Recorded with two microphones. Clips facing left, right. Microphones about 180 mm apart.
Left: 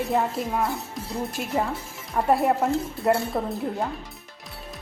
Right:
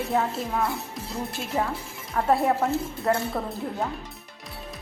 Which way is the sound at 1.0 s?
Centre (ahead or behind).